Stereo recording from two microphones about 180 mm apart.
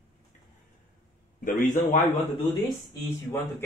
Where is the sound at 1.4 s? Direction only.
45° left (ahead or behind).